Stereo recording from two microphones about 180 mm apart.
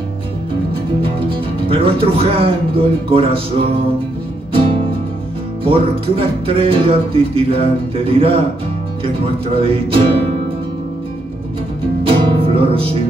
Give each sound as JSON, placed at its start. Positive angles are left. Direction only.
{"t": 1.0, "sound": "speech", "side_deg": -30}
{"t": 5.6, "sound": "music", "side_deg": -30}
{"t": 12.0, "sound": "music", "side_deg": -30}